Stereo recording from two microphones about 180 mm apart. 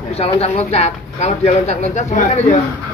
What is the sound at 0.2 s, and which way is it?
Speech, 35° left (ahead or behind).